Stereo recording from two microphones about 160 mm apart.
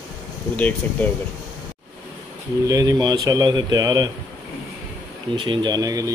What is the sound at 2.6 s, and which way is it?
Speech, 20° right (ahead or behind).